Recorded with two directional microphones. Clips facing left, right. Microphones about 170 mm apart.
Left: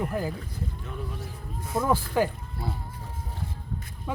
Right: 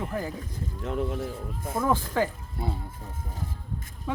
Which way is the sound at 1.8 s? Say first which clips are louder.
Left 1 dB; 10° left (ahead or behind).